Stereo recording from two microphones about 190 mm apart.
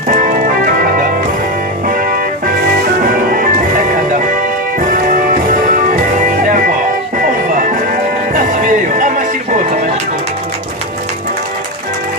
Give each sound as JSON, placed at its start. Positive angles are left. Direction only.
{"t": 0.1, "sound": "organ", "side_deg": -45}
{"t": 1.9, "sound": "music", "side_deg": -45}
{"t": 4.8, "sound": "music", "side_deg": -45}